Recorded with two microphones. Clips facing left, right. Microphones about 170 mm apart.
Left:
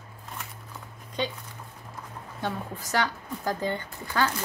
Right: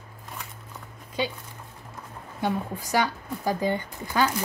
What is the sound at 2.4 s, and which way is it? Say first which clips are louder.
A woman's voice: right 5 dB; 10° right (ahead or behind).